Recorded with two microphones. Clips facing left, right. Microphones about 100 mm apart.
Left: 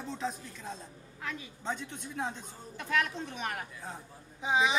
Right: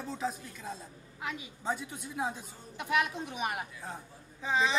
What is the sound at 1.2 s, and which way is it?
A woman's voice, 15° right (ahead or behind).